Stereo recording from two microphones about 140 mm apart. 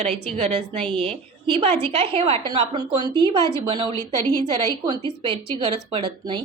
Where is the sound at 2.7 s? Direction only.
30° right (ahead or behind).